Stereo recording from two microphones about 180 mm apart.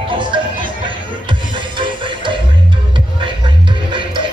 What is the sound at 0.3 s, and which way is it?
Music, 25° right (ahead or behind).